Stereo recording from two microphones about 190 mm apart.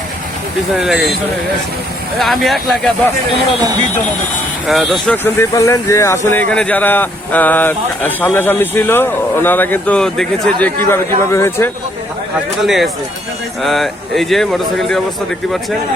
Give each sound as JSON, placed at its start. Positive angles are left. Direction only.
{"t": 0.7, "sound": "speech", "side_deg": 0}
{"t": 2.1, "sound": "speech", "side_deg": 0}
{"t": 4.6, "sound": "speech", "side_deg": 0}
{"t": 5.1, "sound": "speech", "side_deg": 10}
{"t": 12.6, "sound": "speech", "side_deg": 0}